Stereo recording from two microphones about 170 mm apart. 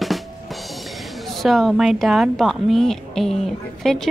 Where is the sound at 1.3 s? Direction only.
Centre (ahead or behind).